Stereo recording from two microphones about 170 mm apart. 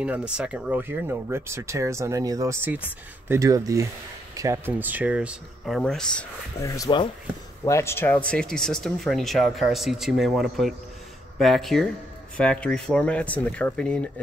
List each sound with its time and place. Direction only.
0.0 s speech: 5° right (ahead or behind)
6.6 s speech: 20° left (ahead or behind)